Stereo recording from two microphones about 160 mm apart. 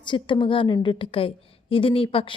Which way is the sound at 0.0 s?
30° left (ahead or behind).